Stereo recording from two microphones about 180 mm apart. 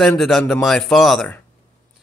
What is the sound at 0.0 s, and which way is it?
A man's voice, centre (ahead or behind).